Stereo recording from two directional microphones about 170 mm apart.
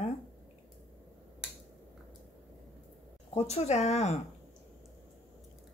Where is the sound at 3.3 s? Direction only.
40° left (ahead or behind).